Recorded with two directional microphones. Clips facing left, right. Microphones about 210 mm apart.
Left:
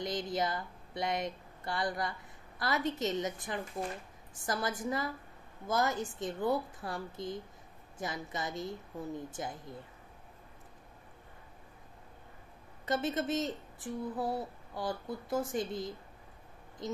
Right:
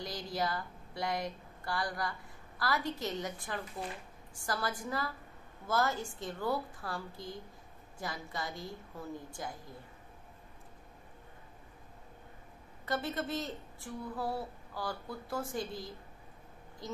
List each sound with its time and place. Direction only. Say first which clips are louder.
0.0 s speech: left 3 dB; 20° left (ahead or behind)
12.8 s speech: left 3 dB; 20° left (ahead or behind)